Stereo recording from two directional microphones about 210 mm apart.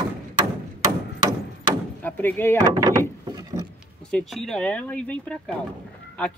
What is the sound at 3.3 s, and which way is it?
Wood, 20° right (ahead or behind).